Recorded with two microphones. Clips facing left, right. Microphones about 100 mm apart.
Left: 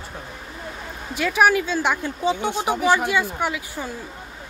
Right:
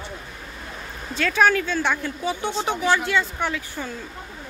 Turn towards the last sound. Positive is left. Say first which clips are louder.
# left 1 dB
turn(degrees=15)  # may be behind; listen again after turning